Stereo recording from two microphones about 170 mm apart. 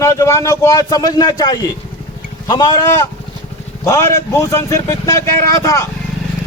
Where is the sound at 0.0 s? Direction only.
15° left (ahead or behind).